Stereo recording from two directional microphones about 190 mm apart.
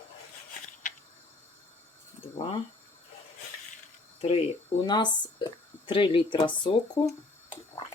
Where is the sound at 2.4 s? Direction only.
30° left (ahead or behind).